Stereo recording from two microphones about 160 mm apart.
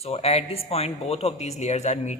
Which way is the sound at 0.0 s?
40° left (ahead or behind).